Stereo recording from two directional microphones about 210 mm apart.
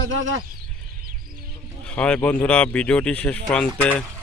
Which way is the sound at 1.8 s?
5° left (ahead or behind).